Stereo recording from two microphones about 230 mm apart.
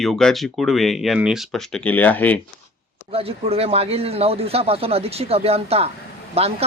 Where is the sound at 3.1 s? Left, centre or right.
Right.